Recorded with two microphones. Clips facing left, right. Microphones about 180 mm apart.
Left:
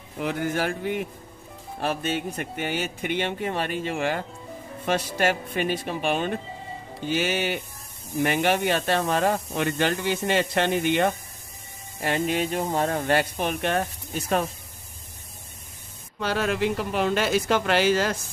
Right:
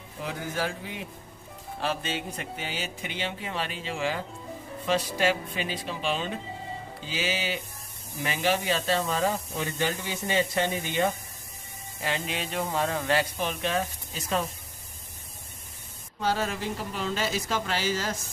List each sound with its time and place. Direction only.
0.2 s speech: 65° left (ahead or behind)
12.0 s speech: 50° left (ahead or behind)
16.2 s speech: 65° left (ahead or behind)